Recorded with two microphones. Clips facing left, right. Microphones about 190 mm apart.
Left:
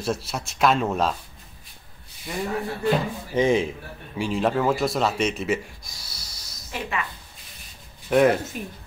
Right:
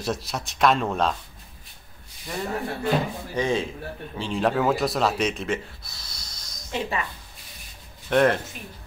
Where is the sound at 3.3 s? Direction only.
20° left (ahead or behind).